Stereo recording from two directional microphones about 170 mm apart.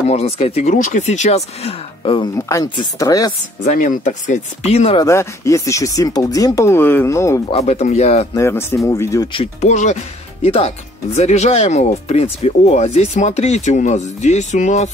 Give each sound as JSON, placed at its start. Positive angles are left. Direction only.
{"t": 0.1, "sound": "speech", "side_deg": 35}
{"t": 2.3, "sound": "speech", "side_deg": 20}
{"t": 3.6, "sound": "speech", "side_deg": 50}
{"t": 4.9, "sound": "speech", "side_deg": 15}
{"t": 7.4, "sound": "speech", "side_deg": 40}
{"t": 8.4, "sound": "speech", "side_deg": 15}
{"t": 9.3, "sound": "speech", "side_deg": 40}